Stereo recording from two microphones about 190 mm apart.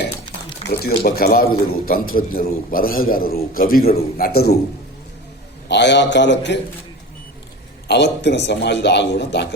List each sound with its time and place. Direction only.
0.7 s a man's voice: 55° left (ahead or behind)
5.6 s a man's voice: 65° left (ahead or behind)
7.9 s a man's voice: 65° left (ahead or behind)